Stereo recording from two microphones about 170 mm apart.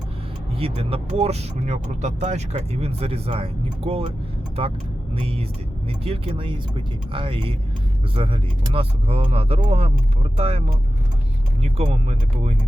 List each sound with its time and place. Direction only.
0.5 s speech: 35° right (ahead or behind)
5.1 s speech: 35° right (ahead or behind)